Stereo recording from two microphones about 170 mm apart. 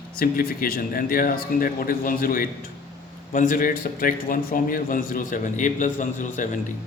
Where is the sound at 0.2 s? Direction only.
60° left (ahead or behind).